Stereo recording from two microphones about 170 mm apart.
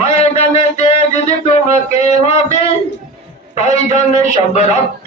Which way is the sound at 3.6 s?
40° left (ahead or behind).